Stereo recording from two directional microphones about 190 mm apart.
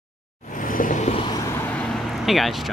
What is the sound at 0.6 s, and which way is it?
Vehicle, 45° left (ahead or behind).